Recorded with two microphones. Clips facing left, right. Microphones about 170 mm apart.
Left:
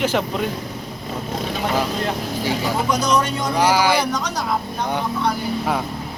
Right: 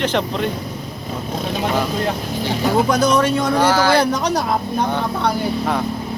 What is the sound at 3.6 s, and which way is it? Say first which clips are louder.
Speech: right 1 dB; 10° left (ahead or behind).